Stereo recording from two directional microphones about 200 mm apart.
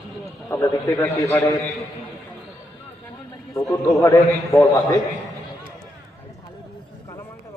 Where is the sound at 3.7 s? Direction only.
15° left (ahead or behind).